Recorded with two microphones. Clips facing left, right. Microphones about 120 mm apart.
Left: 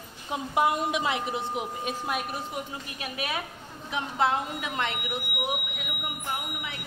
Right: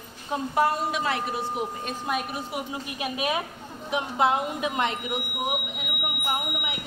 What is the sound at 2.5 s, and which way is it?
A woman's voice, 15° right (ahead or behind).